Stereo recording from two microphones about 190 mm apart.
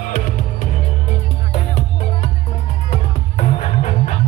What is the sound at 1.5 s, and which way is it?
Music, 35° left (ahead or behind).